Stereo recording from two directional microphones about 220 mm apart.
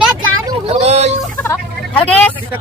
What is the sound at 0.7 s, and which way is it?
Speech, 30° right (ahead or behind).